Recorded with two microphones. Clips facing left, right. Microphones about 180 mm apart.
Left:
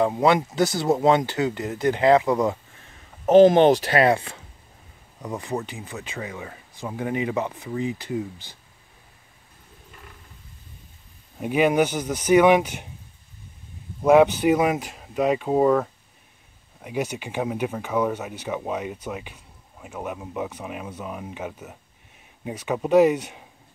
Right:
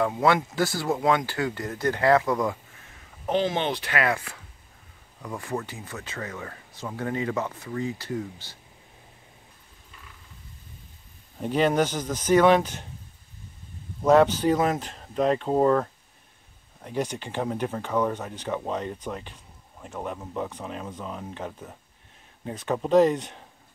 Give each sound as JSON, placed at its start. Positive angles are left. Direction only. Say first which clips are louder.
{"t": 0.0, "sound": "speech", "louder": "left 3 dB", "side_deg": 20}
{"t": 3.3, "sound": "speech", "louder": "left 12 dB", "side_deg": 45}
{"t": 11.3, "sound": "speech", "louder": "left 3 dB", "side_deg": 10}
{"t": 14.0, "sound": "speech", "louder": "left 3 dB", "side_deg": 10}